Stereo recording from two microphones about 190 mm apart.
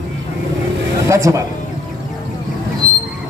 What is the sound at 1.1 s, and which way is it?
Speech, 15° right (ahead or behind).